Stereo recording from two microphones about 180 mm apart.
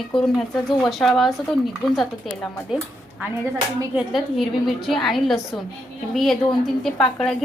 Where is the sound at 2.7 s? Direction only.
5° right (ahead or behind).